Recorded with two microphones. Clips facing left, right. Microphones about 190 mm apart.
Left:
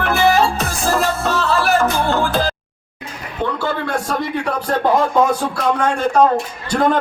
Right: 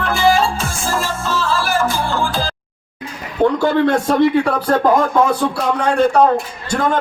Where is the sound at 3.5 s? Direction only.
15° right (ahead or behind).